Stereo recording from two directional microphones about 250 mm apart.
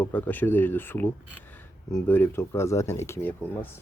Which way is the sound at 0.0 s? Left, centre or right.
Centre.